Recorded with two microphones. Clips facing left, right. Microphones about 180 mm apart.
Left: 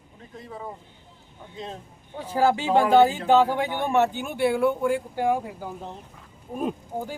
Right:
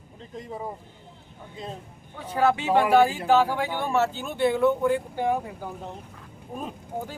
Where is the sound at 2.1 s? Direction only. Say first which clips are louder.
Left 1 dB; 30° left (ahead or behind).